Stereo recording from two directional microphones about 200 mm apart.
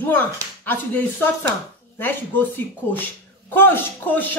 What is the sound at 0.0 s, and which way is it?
A man's voice, 10° left (ahead or behind).